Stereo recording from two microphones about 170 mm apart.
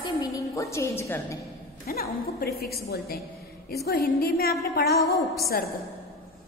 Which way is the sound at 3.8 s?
70° left (ahead or behind).